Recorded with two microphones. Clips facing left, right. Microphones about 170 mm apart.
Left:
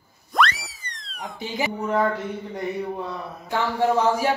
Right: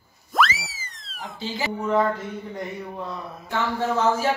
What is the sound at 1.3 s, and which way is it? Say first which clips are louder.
Speech: left 2 dB; 20° left (ahead or behind).